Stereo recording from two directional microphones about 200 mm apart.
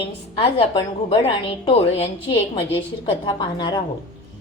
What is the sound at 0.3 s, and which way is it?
A woman's voice, 25° left (ahead or behind).